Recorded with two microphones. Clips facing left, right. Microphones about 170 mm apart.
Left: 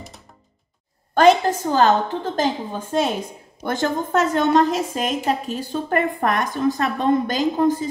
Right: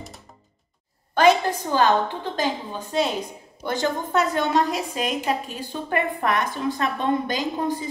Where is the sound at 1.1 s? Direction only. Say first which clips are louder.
Left 3 dB; 45° left (ahead or behind).